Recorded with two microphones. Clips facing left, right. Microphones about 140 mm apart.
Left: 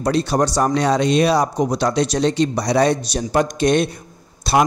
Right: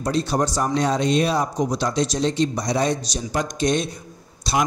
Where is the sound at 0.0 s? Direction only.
70° left (ahead or behind).